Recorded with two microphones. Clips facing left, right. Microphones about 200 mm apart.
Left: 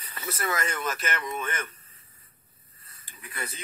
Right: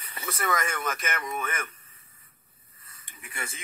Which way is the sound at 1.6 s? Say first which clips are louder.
Even; 30° left (ahead or behind).